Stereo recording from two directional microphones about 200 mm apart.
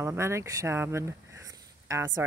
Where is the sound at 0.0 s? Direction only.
15° right (ahead or behind).